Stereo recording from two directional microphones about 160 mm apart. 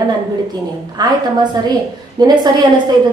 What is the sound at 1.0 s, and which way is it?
Speech, 25° right (ahead or behind).